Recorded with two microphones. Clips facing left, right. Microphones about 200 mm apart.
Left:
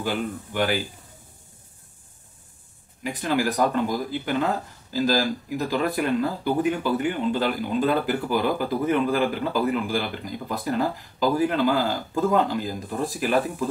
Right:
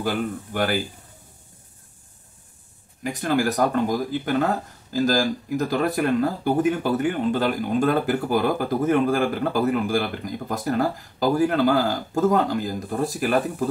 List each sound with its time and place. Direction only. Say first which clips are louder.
0.0 s speech: right 2 dB; 45° right (ahead or behind)
3.0 s speech: right 2 dB; 45° right (ahead or behind)